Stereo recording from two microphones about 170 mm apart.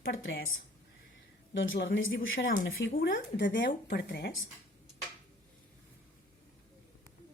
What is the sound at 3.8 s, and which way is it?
Speech, 75° left (ahead or behind).